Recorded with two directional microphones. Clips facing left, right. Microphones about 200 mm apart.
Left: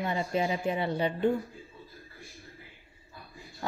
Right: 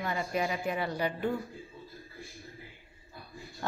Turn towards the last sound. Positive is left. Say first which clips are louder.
# even
turn(degrees=5)  # may be behind; listen again after turning